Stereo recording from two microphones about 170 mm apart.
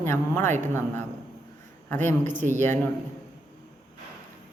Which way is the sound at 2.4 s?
45° right (ahead or behind).